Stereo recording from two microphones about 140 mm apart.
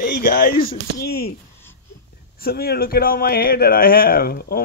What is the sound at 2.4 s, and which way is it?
Speech, 90° left.